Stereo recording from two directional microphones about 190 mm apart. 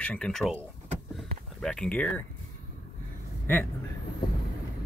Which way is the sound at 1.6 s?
5° left (ahead or behind).